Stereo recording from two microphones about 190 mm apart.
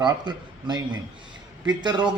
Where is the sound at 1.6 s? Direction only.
25° right (ahead or behind).